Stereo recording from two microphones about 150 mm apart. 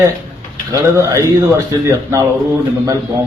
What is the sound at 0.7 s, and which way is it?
Speech, 20° right (ahead or behind).